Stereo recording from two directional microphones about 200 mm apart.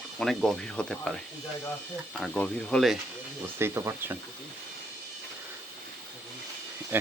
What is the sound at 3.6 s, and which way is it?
Speech, 10° right (ahead or behind).